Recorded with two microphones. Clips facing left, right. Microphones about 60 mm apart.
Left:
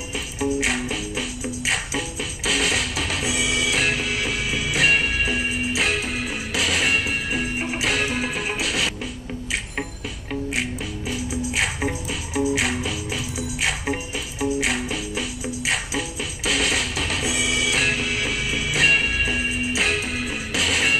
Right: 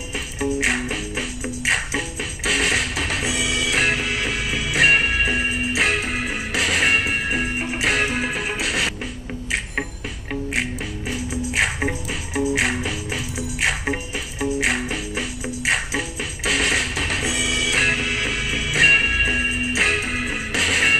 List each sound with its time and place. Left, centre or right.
0.1 s music: right
3.3 s music: centre
3.7 s music: right
10.5 s music: right
17.3 s music: centre
17.7 s music: right